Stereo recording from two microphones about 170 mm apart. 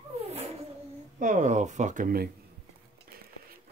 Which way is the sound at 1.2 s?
45° right (ahead or behind).